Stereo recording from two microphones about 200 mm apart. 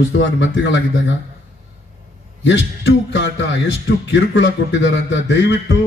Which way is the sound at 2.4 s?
60° left (ahead or behind).